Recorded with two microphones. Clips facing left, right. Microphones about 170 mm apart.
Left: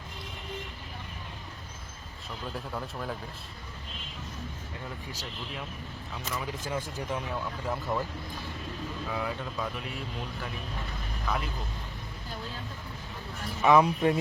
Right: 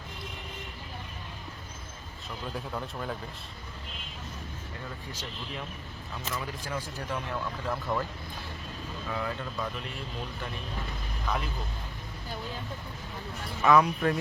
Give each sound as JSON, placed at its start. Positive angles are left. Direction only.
{"t": 2.5, "sound": "speech", "side_deg": 0}
{"t": 6.4, "sound": "speech", "side_deg": 20}
{"t": 9.0, "sound": "speech", "side_deg": 10}
{"t": 11.3, "sound": "speech", "side_deg": 0}
{"t": 13.6, "sound": "speech", "side_deg": 20}